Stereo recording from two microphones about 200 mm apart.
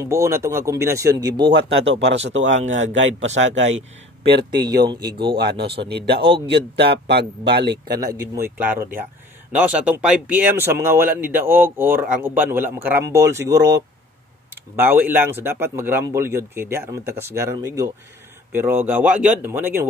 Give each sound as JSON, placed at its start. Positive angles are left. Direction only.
{"t": 0.0, "sound": "speech", "side_deg": -15}
{"t": 2.2, "sound": "a man's voice", "side_deg": -65}
{"t": 4.4, "sound": "speech", "side_deg": -20}
{"t": 5.4, "sound": "speech", "side_deg": -55}
{"t": 7.9, "sound": "speech", "side_deg": -15}